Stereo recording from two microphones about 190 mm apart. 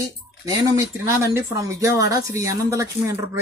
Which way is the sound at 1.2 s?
15° right (ahead or behind).